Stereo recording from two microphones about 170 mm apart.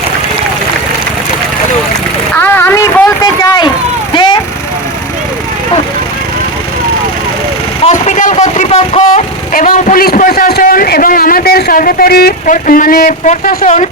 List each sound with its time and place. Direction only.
2.3 s a sound: 10° left (ahead or behind)
4.1 s vehicle: 25° left (ahead or behind)
7.9 s speech: 45° left (ahead or behind)